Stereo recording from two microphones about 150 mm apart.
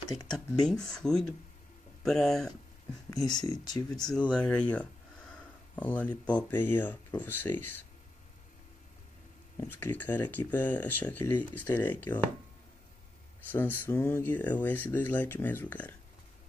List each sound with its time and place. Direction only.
0.1 s speech: 25° left (ahead or behind)
0.6 s speech: 5° left (ahead or behind)
3.3 s speech: 25° left (ahead or behind)
4.1 s speech: 5° left (ahead or behind)
9.6 s speech: 15° left (ahead or behind)
13.5 s speech: 15° left (ahead or behind)